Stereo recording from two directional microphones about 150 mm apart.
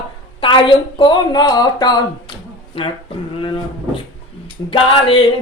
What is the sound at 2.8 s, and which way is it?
Speech, 40° left (ahead or behind).